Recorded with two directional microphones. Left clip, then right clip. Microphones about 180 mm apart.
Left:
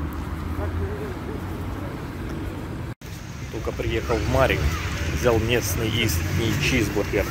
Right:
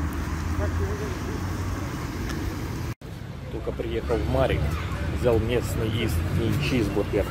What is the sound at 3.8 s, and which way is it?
Speech, 15° left (ahead or behind).